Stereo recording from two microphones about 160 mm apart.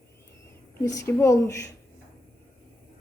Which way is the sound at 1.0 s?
15° left (ahead or behind).